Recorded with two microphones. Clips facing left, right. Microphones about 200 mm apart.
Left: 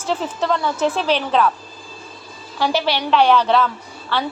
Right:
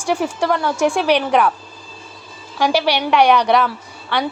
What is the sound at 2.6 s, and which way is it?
A woman's voice, 10° right (ahead or behind).